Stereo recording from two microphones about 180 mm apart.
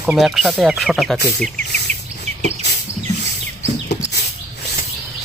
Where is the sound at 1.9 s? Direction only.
40° right (ahead or behind).